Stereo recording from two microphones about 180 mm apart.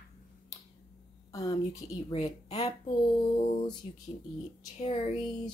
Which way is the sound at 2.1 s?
35° left (ahead or behind).